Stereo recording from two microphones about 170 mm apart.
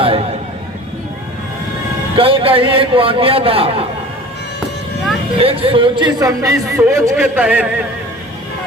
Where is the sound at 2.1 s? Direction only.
35° right (ahead or behind).